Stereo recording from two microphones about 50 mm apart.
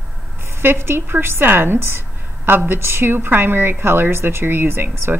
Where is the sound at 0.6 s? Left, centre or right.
Right.